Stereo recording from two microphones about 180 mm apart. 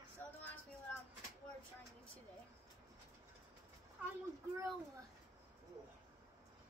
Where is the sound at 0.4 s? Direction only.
10° left (ahead or behind).